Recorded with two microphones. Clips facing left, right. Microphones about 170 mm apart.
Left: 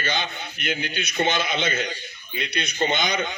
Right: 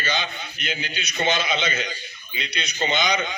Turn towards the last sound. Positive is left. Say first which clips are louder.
# right 1 dB
turn(degrees=50)  # may be behind; listen again after turning